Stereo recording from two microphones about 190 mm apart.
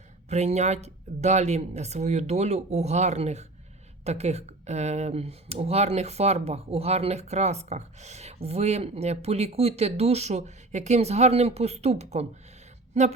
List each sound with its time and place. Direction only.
0.3 s speech: 35° right (ahead or behind)